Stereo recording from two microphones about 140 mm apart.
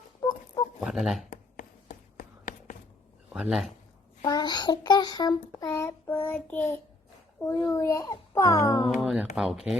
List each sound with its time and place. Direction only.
0.8 s speech: 5° right (ahead or behind)
1.3 s a sound: 75° left (ahead or behind)
3.3 s speech: 5° right (ahead or behind)
4.2 s a child's voice: 25° left (ahead or behind)
5.7 s child singing: 15° left (ahead or behind)
7.3 s a child's voice: 20° left (ahead or behind)
8.9 s speech: centre (ahead or behind)